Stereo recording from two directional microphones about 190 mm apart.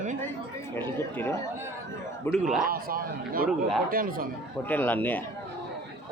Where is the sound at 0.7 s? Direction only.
10° left (ahead or behind).